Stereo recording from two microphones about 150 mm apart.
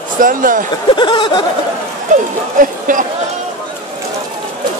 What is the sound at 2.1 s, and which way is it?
Speech, 60° right (ahead or behind).